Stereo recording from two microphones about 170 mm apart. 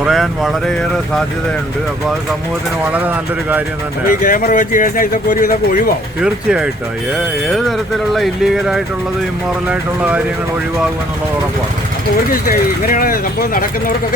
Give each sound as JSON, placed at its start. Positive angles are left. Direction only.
{"t": 0.0, "sound": "speech", "side_deg": 0}
{"t": 4.1, "sound": "speech", "side_deg": 55}
{"t": 6.2, "sound": "speech", "side_deg": -5}
{"t": 8.1, "sound": "speech", "side_deg": 0}
{"t": 12.3, "sound": "speech", "side_deg": 55}